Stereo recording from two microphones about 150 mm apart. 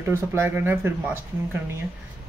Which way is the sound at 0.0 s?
15° right (ahead or behind).